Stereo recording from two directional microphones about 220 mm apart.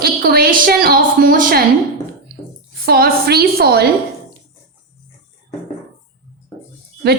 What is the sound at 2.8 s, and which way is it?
A woman's voice, 45° right (ahead or behind).